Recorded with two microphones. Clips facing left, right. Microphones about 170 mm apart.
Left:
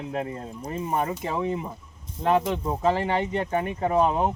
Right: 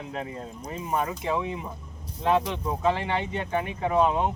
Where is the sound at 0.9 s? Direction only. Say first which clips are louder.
Right 1 dB; 35° left (ahead or behind).